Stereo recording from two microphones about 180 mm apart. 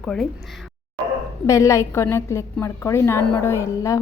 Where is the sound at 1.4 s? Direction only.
15° left (ahead or behind).